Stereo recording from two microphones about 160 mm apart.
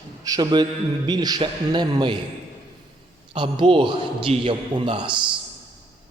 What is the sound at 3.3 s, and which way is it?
A man's voice, 30° right (ahead or behind).